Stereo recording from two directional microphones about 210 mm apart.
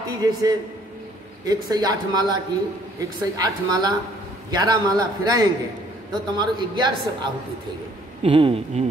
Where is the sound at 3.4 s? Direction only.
20° right (ahead or behind).